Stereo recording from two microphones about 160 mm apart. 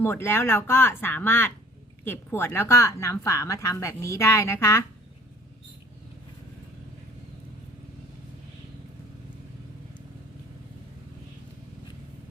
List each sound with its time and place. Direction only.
0.0 s speech: 15° left (ahead or behind)